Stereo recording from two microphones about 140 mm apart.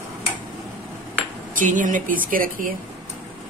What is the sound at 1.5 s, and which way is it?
Speech, 70° right (ahead or behind).